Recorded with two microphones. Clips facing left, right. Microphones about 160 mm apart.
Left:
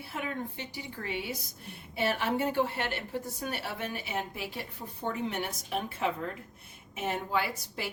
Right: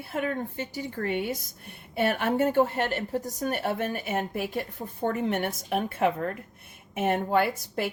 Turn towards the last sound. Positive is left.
turn(degrees=-55)  # may be behind; listen again after turning